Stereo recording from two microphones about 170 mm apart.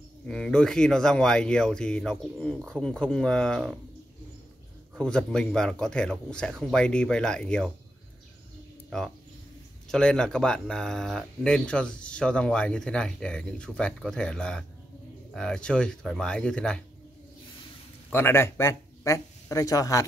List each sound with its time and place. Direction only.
0.3 s speech: 5° left (ahead or behind)
4.9 s speech: 5° left (ahead or behind)
8.9 s speech: 5° left (ahead or behind)
18.1 s speech: 15° left (ahead or behind)